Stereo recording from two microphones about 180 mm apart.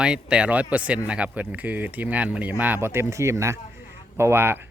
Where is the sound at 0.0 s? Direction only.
5° right (ahead or behind).